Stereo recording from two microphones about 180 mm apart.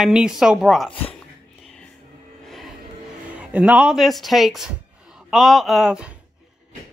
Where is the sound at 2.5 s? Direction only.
Centre (ahead or behind).